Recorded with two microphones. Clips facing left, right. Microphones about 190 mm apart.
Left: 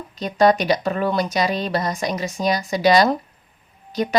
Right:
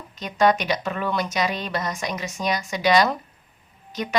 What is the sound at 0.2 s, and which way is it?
Speech, 35° left (ahead or behind).